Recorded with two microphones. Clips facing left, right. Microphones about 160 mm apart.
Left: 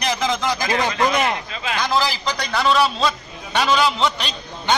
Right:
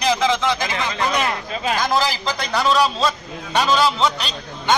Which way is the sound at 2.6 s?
Centre (ahead or behind).